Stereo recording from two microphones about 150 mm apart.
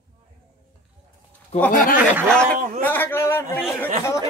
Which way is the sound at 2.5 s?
60° right (ahead or behind).